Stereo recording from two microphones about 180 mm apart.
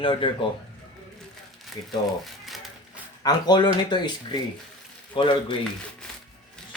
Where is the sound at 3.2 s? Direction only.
20° left (ahead or behind).